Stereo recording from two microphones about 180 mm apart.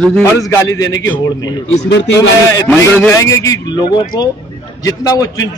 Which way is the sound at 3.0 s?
15° left (ahead or behind).